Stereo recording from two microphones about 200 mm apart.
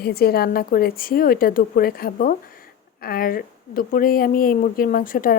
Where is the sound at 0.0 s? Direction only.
50° left (ahead or behind).